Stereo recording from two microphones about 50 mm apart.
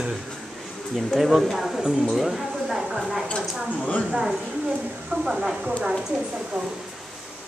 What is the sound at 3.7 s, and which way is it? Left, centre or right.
Speech, left.